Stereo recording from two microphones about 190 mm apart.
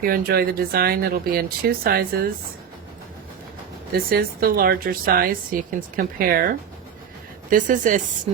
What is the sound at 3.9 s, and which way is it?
Speech, 55° right (ahead or behind).